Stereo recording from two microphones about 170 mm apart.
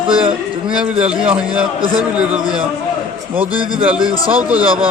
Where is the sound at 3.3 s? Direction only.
10° right (ahead or behind).